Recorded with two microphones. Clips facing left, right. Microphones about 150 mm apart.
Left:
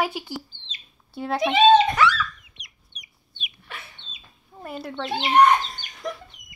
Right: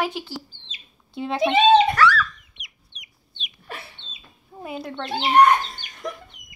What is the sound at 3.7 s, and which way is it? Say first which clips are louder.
Chicken: right 4 dB; 30° right (ahead or behind).